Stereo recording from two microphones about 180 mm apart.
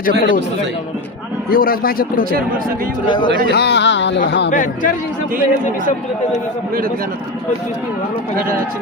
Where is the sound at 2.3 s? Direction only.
50° right (ahead or behind).